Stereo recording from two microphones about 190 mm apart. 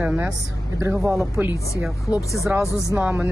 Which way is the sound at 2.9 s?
5° right (ahead or behind).